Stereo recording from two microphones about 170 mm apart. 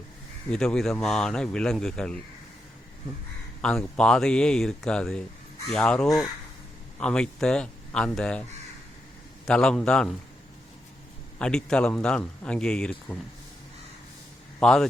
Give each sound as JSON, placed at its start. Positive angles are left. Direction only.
{"t": 0.5, "sound": "a man's voice", "side_deg": 5}
{"t": 3.6, "sound": "a man's voice", "side_deg": 5}
{"t": 9.5, "sound": "a man's voice", "side_deg": 5}
{"t": 11.3, "sound": "a man's voice", "side_deg": 5}
{"t": 14.6, "sound": "a man's voice", "side_deg": 5}